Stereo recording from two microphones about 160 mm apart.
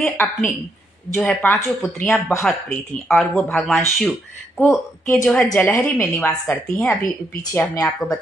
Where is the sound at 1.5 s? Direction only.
15° left (ahead or behind).